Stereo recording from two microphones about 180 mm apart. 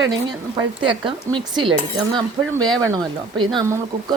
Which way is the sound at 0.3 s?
25° right (ahead or behind).